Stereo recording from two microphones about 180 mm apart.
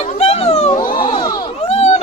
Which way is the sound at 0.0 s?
35° left (ahead or behind).